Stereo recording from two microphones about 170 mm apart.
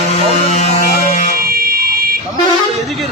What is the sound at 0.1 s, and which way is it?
Music, 40° left (ahead or behind).